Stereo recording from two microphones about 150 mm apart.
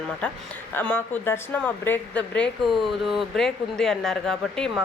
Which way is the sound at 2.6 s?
Centre (ahead or behind).